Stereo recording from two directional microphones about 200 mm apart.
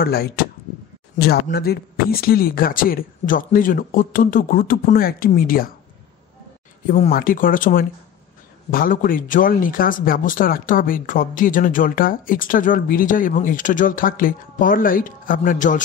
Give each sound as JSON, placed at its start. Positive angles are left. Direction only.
{"t": 0.0, "sound": "speech", "side_deg": 50}
{"t": 6.9, "sound": "speech", "side_deg": 45}